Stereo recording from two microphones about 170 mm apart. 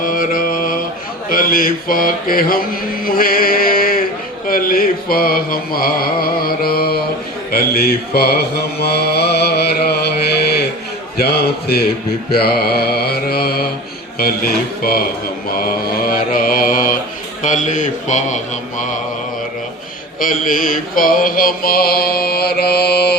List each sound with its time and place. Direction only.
0.0 s mantra: 55° left (ahead or behind)
3.0 s a sound: 60° left (ahead or behind)
4.4 s mantra: 60° left (ahead or behind)
11.2 s a man's voice: 65° left (ahead or behind)
12.3 s mantra: 65° left (ahead or behind)
17.4 s a man's voice: 45° left (ahead or behind)
20.1 s mantra: 55° left (ahead or behind)